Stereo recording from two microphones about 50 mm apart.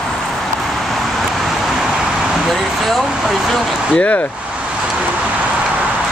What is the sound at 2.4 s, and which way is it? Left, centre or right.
Speech, centre.